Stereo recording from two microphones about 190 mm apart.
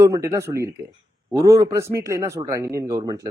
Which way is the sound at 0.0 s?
15° right (ahead or behind).